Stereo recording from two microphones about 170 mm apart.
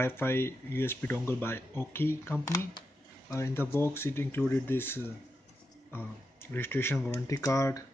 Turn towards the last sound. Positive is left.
turn(degrees=15)  # may be behind; listen again after turning